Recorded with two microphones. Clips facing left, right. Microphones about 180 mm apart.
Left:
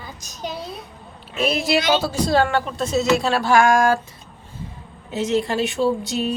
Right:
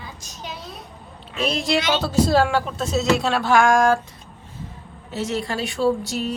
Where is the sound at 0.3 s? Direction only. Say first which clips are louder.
Left 7 dB; 40° left (ahead or behind).